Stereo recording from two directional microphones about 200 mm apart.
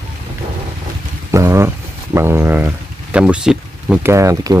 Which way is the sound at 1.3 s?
15° right (ahead or behind).